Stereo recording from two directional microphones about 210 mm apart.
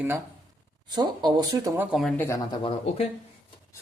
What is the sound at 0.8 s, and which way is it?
Speech, 20° right (ahead or behind).